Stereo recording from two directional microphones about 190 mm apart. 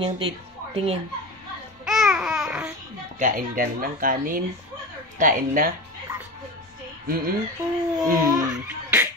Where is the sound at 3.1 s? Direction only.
45° right (ahead or behind).